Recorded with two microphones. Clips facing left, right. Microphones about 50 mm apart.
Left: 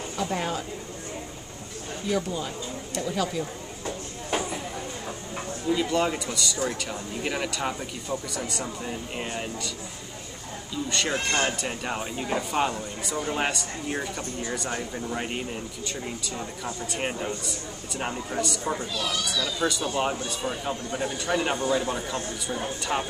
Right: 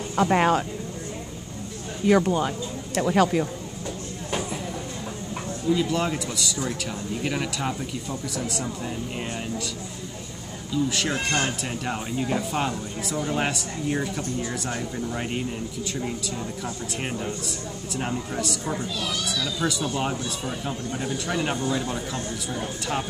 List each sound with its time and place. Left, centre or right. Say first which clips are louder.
0.1 s speech: right 9 dB; right
2.0 s speech: right 8 dB; right
5.7 s speech: right 1 dB; centre
10.7 s speech: right 3 dB; centre
17.0 s a man's voice: even; centre